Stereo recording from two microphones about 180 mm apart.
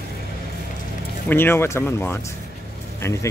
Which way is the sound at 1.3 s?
10° left (ahead or behind).